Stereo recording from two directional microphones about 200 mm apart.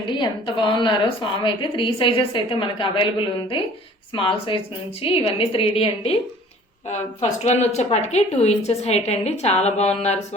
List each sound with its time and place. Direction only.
0.1 s a woman's voice: 25° left (ahead or behind)